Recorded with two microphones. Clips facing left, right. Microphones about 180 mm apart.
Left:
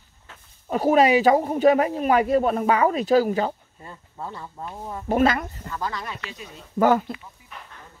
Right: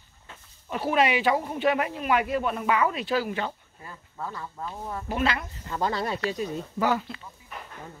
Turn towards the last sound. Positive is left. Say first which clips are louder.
# left 7 dB
turn(degrees=50)  # may be behind; listen again after turning